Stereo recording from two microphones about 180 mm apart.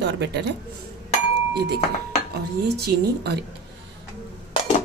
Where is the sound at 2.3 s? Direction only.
60° right (ahead or behind).